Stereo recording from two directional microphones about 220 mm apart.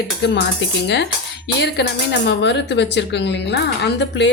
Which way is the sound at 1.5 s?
50° left (ahead or behind).